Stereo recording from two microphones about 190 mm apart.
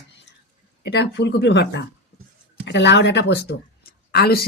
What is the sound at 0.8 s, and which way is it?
A woman's voice, 65° left (ahead or behind).